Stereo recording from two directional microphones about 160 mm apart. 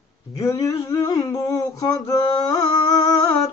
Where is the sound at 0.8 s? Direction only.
25° left (ahead or behind).